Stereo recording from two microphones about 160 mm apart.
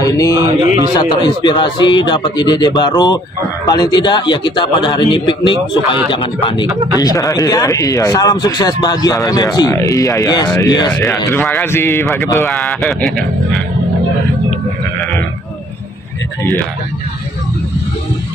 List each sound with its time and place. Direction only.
0.0 s speech: 20° left (ahead or behind)
7.0 s speech: 20° left (ahead or behind)
10.9 s speech: 15° left (ahead or behind)
12.4 s speech: 5° left (ahead or behind)